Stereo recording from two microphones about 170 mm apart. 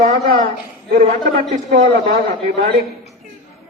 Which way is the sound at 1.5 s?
55° right (ahead or behind).